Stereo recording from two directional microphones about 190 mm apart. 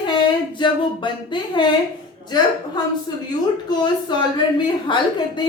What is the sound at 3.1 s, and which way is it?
A woman's voice, 25° left (ahead or behind).